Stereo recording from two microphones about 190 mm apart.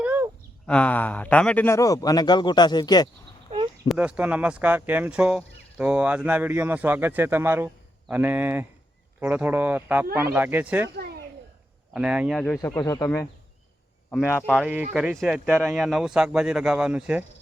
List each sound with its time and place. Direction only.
0.0 s a sound: 10° right (ahead or behind)
0.7 s speech: 5° left (ahead or behind)
3.8 s speech: 5° right (ahead or behind)
10.9 s a sound: 55° right (ahead or behind)
11.9 s speech: 5° right (ahead or behind)
12.5 s speech: 15° left (ahead or behind)
14.5 s speech: 5° right (ahead or behind)